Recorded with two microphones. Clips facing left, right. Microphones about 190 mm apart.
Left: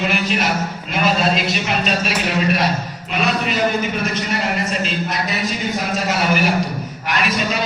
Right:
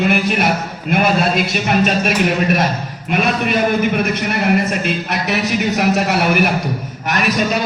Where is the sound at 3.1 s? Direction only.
55° right (ahead or behind).